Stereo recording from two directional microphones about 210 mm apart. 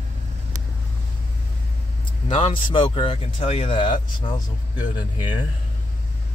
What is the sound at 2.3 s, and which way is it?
Speech, 25° left (ahead or behind).